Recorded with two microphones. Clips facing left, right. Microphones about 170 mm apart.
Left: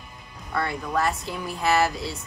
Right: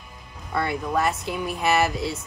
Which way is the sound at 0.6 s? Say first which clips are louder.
Right 2 dB; centre (ahead or behind).